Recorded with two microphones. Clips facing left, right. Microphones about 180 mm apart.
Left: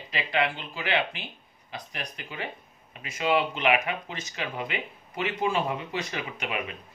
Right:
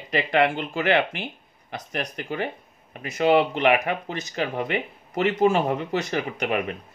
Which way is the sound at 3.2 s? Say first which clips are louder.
Right 5 dB; 45° right (ahead or behind).